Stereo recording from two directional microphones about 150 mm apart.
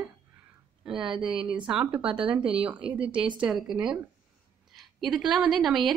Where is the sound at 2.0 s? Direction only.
35° right (ahead or behind).